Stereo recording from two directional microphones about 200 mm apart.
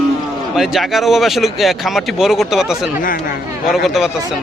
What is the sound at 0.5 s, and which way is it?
Speech, centre (ahead or behind).